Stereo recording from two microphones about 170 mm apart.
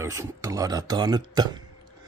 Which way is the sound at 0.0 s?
20° right (ahead or behind).